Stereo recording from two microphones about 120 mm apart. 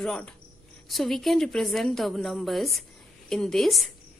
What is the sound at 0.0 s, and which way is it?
A woman's voice, 10° left (ahead or behind).